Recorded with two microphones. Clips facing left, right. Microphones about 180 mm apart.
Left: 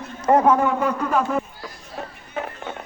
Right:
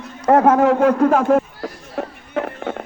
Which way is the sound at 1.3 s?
65° right (ahead or behind).